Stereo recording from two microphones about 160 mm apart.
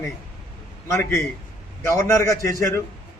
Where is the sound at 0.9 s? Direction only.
20° left (ahead or behind).